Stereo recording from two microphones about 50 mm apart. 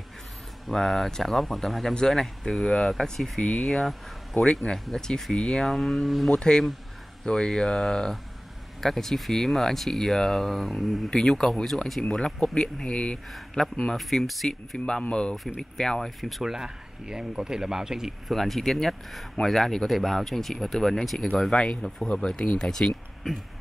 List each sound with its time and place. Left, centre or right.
0.7 s speech: centre
3.3 s speech: centre
5.3 s speech: centre
6.3 s speech: centre
12.0 s speech: centre
14.9 s speech: centre
16.2 s speech: centre
16.5 s speech: centre
18.3 s speech: centre
21.5 s speech: centre